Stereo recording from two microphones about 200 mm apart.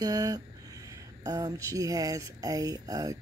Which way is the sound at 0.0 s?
20° right (ahead or behind).